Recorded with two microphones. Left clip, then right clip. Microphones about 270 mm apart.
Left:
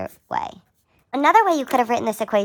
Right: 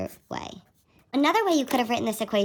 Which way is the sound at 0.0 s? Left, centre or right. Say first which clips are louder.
Left 8 dB; centre.